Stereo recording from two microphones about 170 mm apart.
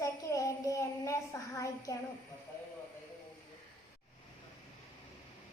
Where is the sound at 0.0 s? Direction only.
20° left (ahead or behind).